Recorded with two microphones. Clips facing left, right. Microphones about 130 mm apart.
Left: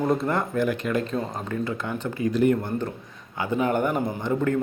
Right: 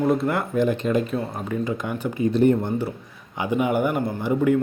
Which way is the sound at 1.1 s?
10° right (ahead or behind).